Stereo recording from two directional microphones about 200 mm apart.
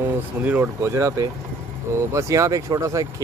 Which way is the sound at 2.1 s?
15° right (ahead or behind).